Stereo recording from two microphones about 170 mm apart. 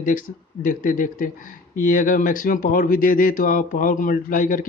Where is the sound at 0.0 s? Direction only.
50° left (ahead or behind).